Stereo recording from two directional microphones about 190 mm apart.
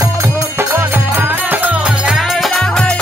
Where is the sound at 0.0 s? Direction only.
15° right (ahead or behind).